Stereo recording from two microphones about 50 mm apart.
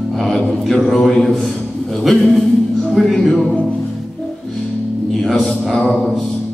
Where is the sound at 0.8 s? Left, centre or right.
Centre.